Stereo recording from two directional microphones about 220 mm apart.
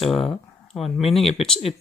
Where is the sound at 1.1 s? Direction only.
25° left (ahead or behind).